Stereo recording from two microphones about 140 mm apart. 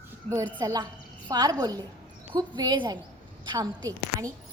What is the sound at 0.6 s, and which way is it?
A woman's voice, 25° right (ahead or behind).